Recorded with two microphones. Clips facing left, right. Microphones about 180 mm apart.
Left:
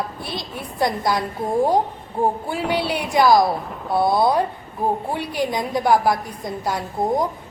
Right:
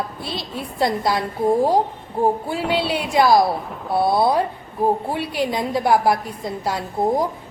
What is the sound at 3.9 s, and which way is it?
Speech, centre (ahead or behind).